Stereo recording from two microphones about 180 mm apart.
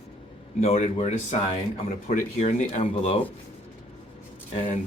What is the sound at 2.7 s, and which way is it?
Speech, 35° left (ahead or behind).